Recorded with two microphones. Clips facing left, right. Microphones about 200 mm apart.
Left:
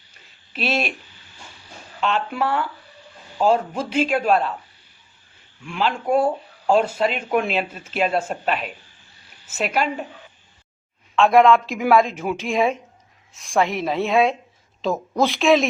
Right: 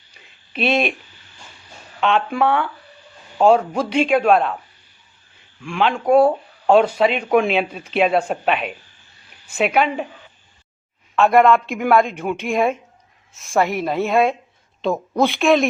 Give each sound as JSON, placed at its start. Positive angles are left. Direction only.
{"t": 0.6, "sound": "speech", "side_deg": -55}
{"t": 2.0, "sound": "a woman's voice", "side_deg": -60}
{"t": 5.6, "sound": "a woman's voice", "side_deg": -65}
{"t": 11.1, "sound": "a woman's voice", "side_deg": 0}